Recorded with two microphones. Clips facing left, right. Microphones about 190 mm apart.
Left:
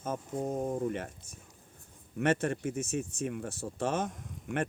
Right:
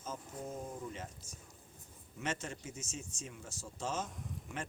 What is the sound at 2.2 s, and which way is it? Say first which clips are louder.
Speech: left 12 dB; 60° left (ahead or behind).